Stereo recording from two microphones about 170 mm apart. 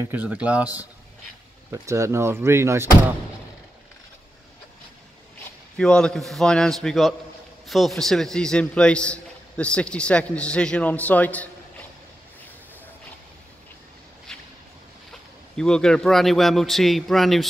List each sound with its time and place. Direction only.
0.0 s speech: 10° right (ahead or behind)
1.7 s speech: 15° right (ahead or behind)
5.8 s a man's voice: 5° left (ahead or behind)
14.3 s a sound: 5° left (ahead or behind)
15.5 s a man's voice: 5° left (ahead or behind)